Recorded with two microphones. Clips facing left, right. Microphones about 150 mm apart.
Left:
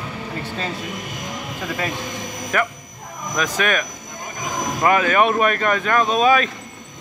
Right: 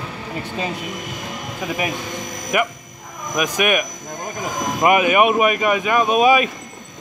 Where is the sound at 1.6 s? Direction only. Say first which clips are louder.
Right 2 dB; 15° right (ahead or behind).